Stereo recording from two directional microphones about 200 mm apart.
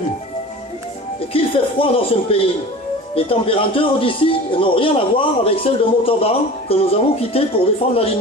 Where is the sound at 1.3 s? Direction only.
25° left (ahead or behind).